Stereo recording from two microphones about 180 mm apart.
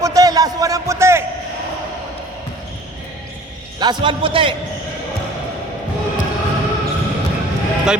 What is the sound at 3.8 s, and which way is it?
Speech, 25° right (ahead or behind).